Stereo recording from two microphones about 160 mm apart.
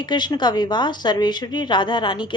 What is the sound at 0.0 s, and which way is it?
Speech, 25° left (ahead or behind).